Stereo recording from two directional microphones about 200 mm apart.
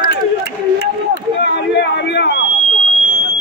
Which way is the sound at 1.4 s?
60° left (ahead or behind).